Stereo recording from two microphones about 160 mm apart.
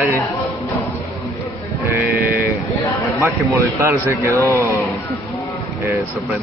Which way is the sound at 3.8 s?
15° right (ahead or behind).